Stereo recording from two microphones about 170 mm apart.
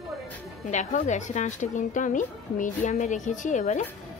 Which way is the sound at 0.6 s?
45° left (ahead or behind).